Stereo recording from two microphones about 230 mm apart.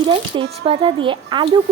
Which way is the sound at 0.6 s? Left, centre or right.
Right.